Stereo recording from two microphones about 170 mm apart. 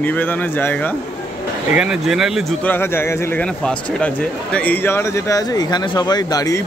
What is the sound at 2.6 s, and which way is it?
Speech, 10° left (ahead or behind).